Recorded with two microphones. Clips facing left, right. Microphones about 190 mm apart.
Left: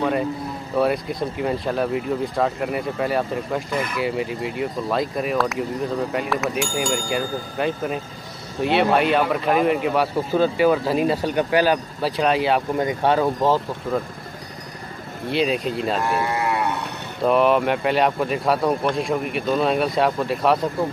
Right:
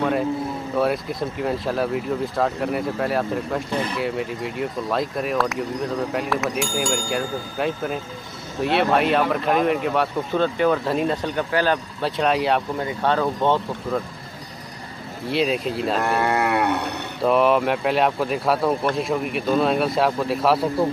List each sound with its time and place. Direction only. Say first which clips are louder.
0.7 s speech: left 2 dB; centre (ahead or behind)
3.7 s speech: right 1 dB; 30° right (ahead or behind)
4.0 s speech: left 1 dB; centre (ahead or behind)
12.8 s speech: left 2 dB; 10° left (ahead or behind)
15.2 s speech: even; centre (ahead or behind)
16.0 s livestock: right 2 dB; 60° right (ahead or behind)
17.2 s speech: left 1 dB; centre (ahead or behind)